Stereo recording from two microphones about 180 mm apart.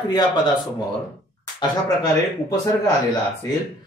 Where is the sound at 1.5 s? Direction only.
20° left (ahead or behind).